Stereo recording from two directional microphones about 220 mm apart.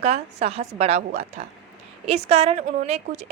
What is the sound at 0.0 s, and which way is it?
Speech, 30° right (ahead or behind).